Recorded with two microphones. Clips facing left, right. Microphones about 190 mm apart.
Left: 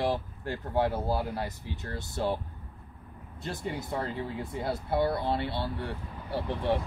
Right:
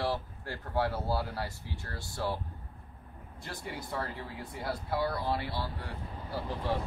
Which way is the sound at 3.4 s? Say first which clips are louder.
Left 6 dB; 20° left (ahead or behind).